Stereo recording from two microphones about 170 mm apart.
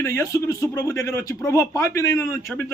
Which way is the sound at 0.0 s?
20° left (ahead or behind).